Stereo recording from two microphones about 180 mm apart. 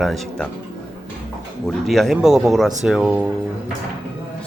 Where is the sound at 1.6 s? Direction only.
Centre (ahead or behind).